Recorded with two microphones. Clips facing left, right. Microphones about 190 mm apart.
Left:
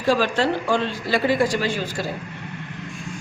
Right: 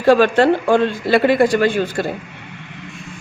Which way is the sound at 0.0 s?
60° right (ahead or behind).